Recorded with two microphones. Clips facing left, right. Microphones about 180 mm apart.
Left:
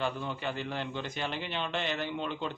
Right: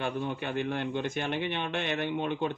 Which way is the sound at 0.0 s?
55° right (ahead or behind).